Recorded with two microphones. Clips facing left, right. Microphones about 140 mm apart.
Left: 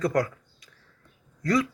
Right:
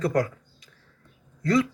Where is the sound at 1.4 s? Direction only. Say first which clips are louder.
Right 2 dB; 30° right (ahead or behind).